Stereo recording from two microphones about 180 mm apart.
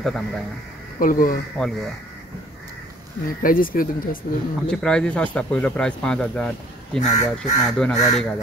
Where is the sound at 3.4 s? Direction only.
50° left (ahead or behind).